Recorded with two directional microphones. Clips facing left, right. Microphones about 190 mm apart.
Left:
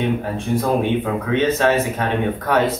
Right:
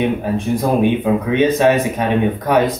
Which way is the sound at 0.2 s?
15° right (ahead or behind).